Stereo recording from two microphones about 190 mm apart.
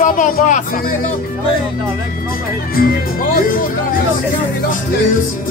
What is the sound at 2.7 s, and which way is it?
Music, 50° left (ahead or behind).